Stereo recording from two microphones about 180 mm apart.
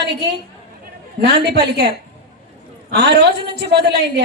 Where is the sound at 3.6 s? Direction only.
65° right (ahead or behind).